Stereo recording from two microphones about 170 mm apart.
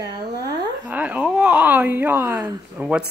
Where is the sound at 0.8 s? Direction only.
10° right (ahead or behind).